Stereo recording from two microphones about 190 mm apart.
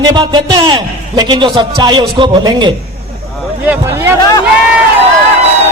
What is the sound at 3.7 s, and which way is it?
Speech, 10° right (ahead or behind).